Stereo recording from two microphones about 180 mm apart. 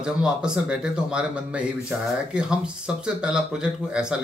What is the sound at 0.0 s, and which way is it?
Speech, 5° right (ahead or behind).